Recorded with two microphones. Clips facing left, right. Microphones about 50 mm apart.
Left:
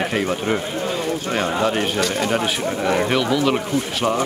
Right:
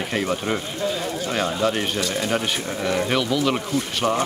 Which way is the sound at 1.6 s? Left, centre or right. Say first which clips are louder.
Left 2 dB; centre.